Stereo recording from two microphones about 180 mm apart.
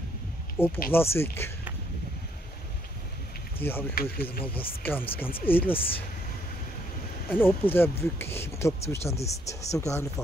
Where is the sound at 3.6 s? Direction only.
10° left (ahead or behind).